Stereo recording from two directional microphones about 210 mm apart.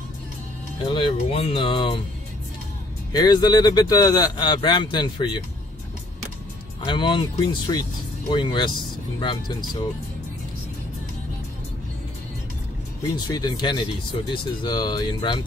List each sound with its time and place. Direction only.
0.8 s speech: 25° left (ahead or behind)
3.1 s speech: 20° left (ahead or behind)
6.8 s speech: 20° left (ahead or behind)
13.1 s speech: 20° left (ahead or behind)